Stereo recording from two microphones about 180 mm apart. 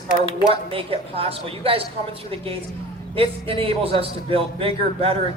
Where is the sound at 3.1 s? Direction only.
30° right (ahead or behind).